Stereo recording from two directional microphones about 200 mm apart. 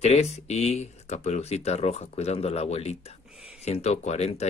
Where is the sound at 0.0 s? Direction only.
35° left (ahead or behind).